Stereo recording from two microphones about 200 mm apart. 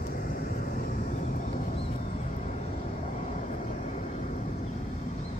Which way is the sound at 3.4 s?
35° left (ahead or behind).